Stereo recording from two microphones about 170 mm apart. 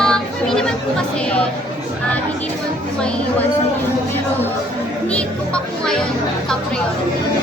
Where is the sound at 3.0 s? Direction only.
5° left (ahead or behind).